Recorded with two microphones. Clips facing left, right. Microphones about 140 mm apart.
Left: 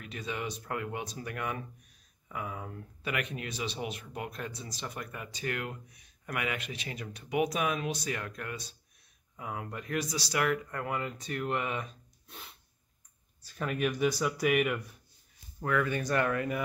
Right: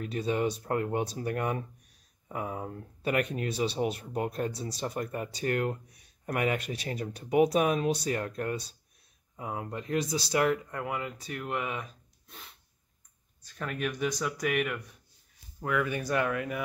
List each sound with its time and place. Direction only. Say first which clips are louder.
0.0 s speech: right 8 dB; 35° right (ahead or behind)
10.7 s speech: even; 10° right (ahead or behind)
13.4 s speech: left 2 dB; 5° left (ahead or behind)
15.6 s speech: even; 10° right (ahead or behind)